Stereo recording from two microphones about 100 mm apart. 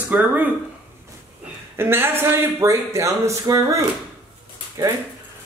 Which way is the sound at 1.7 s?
25° right (ahead or behind).